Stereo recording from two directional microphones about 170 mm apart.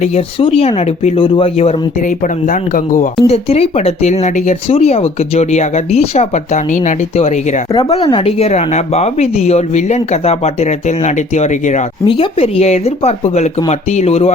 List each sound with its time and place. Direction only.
0.0 s speech: 40° left (ahead or behind)
2.0 s speech: 50° left (ahead or behind)
3.2 s speech: 35° left (ahead or behind)
12.0 s speech: 30° left (ahead or behind)